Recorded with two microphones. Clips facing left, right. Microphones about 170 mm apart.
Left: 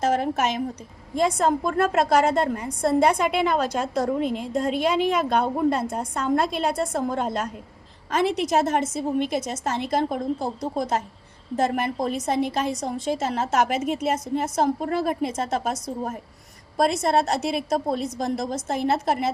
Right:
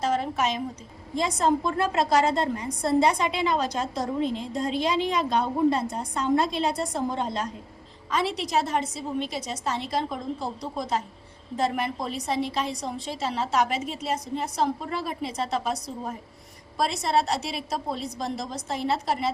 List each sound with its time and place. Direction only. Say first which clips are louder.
0.0 s a woman's voice: left 3 dB; 50° left (ahead or behind)